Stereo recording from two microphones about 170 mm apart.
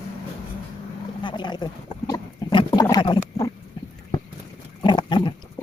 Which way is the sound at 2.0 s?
25° left (ahead or behind).